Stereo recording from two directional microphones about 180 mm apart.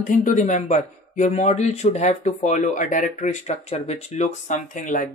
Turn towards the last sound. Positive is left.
turn(degrees=45)  # may be behind; listen again after turning